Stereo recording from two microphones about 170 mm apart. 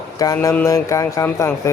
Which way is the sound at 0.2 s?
20° left (ahead or behind).